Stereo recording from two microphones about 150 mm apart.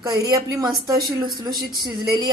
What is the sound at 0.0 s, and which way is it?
Speech, 25° right (ahead or behind).